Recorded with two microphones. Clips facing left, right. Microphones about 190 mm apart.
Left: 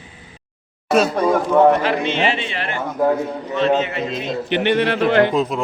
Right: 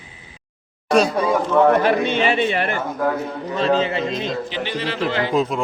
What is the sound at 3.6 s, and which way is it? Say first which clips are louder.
Speech: left 1 dB; 35° right (ahead or behind).